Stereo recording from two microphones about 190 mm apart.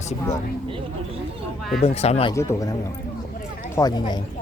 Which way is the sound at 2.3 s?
15° left (ahead or behind).